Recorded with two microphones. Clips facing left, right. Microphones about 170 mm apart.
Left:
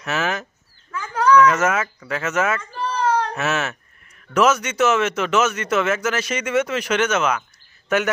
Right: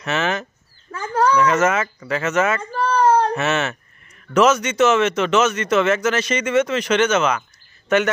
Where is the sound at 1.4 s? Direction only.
Centre (ahead or behind).